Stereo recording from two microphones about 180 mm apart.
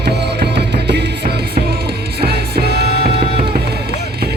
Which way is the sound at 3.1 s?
30° right (ahead or behind).